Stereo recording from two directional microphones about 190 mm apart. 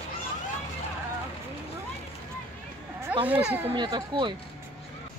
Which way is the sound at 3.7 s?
25° right (ahead or behind).